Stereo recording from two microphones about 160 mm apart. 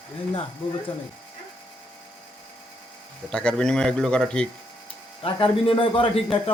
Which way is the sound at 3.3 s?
5° left (ahead or behind).